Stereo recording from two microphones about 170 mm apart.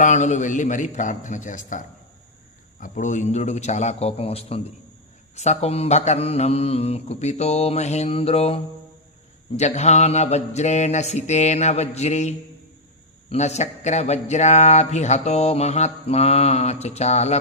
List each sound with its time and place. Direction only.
0.0 s a man's voice: 45° left (ahead or behind)
2.8 s speech: 45° left (ahead or behind)
13.3 s speech: 40° left (ahead or behind)